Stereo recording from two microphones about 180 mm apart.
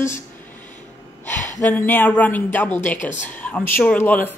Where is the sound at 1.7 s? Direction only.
10° left (ahead or behind).